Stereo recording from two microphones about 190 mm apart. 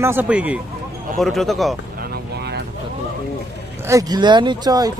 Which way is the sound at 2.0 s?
60° right (ahead or behind).